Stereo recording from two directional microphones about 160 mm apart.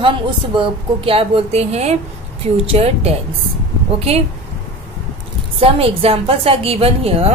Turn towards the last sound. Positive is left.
turn(degrees=-35)  # may be behind; listen again after turning